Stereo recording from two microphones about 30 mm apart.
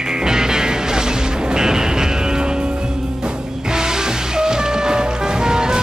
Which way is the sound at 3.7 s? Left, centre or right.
Right.